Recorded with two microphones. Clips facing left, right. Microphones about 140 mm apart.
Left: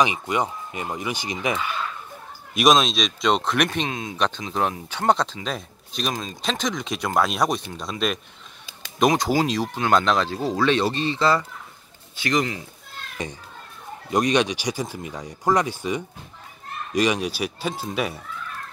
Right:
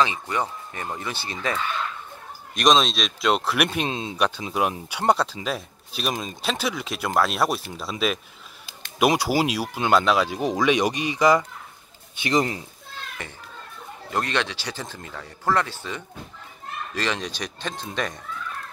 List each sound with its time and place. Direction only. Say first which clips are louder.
0.0 s speech: left 2 dB; 15° left (ahead or behind)
2.5 s speech: left 1 dB; 5° left (ahead or behind)
3.9 s speech: right 1 dB; 25° right (ahead or behind)
4.5 s speech: even; 10° right (ahead or behind)
12.2 s speech: right 1 dB; 25° right (ahead or behind)
13.2 s speech: left 5 dB; 15° left (ahead or behind)